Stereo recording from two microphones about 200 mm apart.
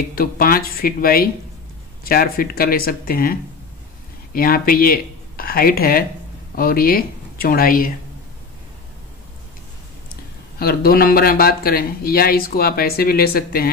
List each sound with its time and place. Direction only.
0.1 s speech: 45° left (ahead or behind)
10.6 s speech: 50° left (ahead or behind)